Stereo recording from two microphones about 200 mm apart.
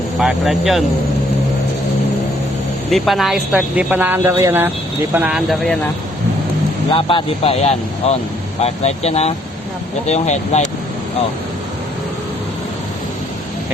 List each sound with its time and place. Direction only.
0.2 s speech: centre (ahead or behind)
2.9 s speech: centre (ahead or behind)
6.9 s speech: 25° left (ahead or behind)